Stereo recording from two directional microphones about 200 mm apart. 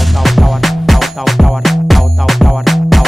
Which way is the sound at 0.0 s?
Centre (ahead or behind).